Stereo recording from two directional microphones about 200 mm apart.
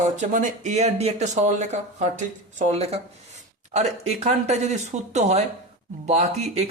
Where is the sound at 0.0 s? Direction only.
40° right (ahead or behind).